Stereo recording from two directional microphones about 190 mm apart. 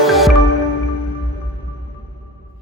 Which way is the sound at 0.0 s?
Centre (ahead or behind).